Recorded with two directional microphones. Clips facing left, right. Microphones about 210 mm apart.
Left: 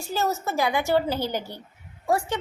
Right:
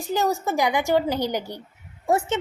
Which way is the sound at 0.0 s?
15° right (ahead or behind).